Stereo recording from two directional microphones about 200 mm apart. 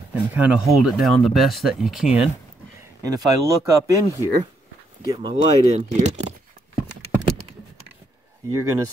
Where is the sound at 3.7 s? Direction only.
15° right (ahead or behind).